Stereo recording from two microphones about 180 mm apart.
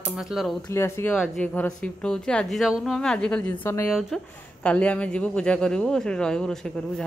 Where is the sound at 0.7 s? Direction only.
15° left (ahead or behind).